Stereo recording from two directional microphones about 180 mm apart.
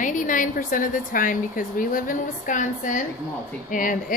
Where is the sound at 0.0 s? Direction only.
45° left (ahead or behind).